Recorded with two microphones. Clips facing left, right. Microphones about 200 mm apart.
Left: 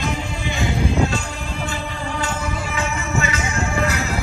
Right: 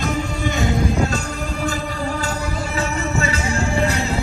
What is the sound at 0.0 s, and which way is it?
Music, 45° right (ahead or behind).